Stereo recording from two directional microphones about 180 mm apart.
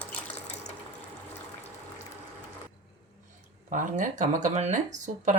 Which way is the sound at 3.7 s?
45° right (ahead or behind).